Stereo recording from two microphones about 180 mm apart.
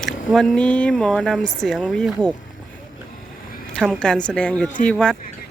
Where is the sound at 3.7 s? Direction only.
5° left (ahead or behind).